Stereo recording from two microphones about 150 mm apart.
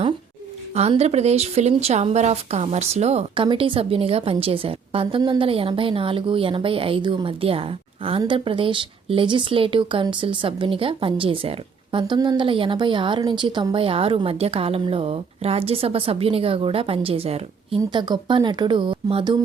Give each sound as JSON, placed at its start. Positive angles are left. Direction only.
{"t": 0.7, "sound": "speech", "side_deg": -45}